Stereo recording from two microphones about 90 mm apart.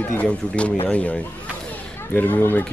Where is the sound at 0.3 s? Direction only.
15° left (ahead or behind).